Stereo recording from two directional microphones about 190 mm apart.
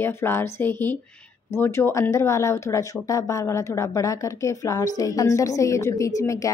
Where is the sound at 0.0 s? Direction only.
10° left (ahead or behind).